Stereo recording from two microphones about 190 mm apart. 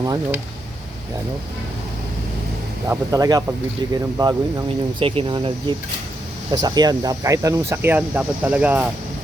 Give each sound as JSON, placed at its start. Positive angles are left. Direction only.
{"t": 0.0, "sound": "speech", "side_deg": -20}
{"t": 2.9, "sound": "speech", "side_deg": -20}